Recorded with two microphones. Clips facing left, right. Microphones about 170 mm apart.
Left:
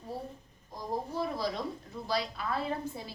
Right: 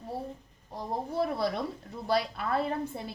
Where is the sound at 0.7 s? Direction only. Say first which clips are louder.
Right 2 dB; 65° right (ahead or behind).